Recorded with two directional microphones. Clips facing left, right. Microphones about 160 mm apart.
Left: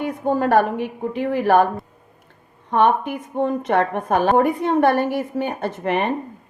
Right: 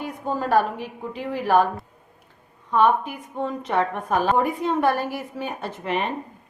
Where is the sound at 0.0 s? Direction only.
60° left (ahead or behind).